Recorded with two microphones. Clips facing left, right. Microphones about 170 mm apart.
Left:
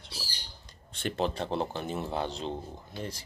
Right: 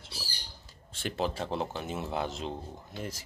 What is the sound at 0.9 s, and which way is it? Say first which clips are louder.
Speech: left 2 dB; centre (ahead or behind).